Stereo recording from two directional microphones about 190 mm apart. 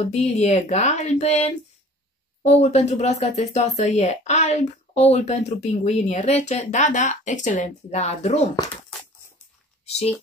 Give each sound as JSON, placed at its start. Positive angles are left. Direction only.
{"t": 0.0, "sound": "speech", "side_deg": 35}